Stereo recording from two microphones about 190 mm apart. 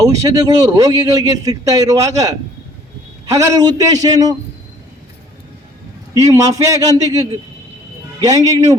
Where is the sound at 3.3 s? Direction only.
20° right (ahead or behind).